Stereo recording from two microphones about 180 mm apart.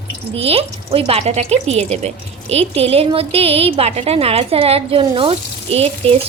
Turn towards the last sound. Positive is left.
turn(degrees=-35)  # may be behind; listen again after turning